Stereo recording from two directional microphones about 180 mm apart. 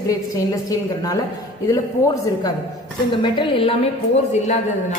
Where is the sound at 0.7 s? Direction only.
20° left (ahead or behind).